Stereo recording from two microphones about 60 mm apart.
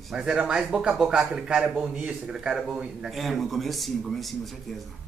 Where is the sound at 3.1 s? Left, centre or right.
Centre.